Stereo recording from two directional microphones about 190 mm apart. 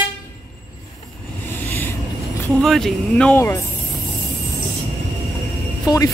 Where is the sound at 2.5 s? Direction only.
Centre (ahead or behind).